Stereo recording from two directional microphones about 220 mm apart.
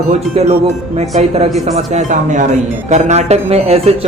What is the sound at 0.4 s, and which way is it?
Speech, 30° right (ahead or behind).